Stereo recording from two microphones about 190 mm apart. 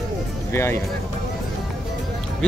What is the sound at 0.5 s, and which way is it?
Speech, 15° left (ahead or behind).